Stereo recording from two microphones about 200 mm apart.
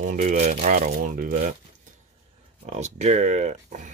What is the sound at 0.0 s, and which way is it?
Speech, 40° right (ahead or behind).